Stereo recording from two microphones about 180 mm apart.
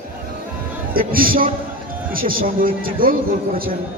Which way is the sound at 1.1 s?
50° right (ahead or behind).